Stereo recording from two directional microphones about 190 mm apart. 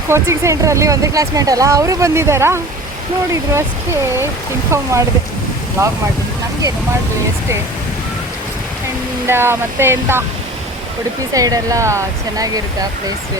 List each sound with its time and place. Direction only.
0.1 s speech: 15° right (ahead or behind)
4.0 s speech: 15° right (ahead or behind)
9.2 s speech: 10° right (ahead or behind)
11.3 s speech: 20° right (ahead or behind)